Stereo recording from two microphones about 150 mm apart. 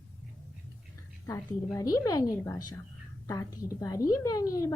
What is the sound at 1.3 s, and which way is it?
A woman's voice, 25° left (ahead or behind).